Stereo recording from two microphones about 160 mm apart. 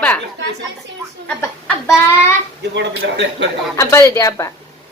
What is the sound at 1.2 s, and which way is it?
Speech, 10° left (ahead or behind).